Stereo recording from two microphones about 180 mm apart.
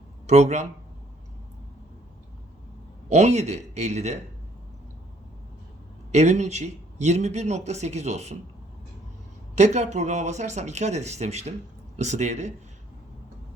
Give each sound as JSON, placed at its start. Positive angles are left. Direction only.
{"t": 0.3, "sound": "a man's voice", "side_deg": -40}
{"t": 3.1, "sound": "a man's voice", "side_deg": -40}
{"t": 6.1, "sound": "a man's voice", "side_deg": -40}
{"t": 9.6, "sound": "a man's voice", "side_deg": -40}